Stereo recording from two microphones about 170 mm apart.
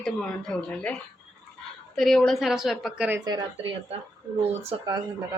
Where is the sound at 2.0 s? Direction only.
Centre (ahead or behind).